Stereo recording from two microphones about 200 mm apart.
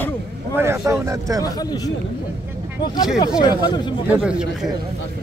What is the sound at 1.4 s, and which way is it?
Speech, 20° left (ahead or behind).